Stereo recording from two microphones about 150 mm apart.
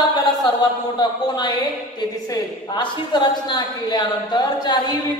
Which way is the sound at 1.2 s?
25° left (ahead or behind).